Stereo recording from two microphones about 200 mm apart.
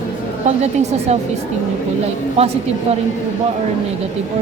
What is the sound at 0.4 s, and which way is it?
Speech, 35° right (ahead or behind).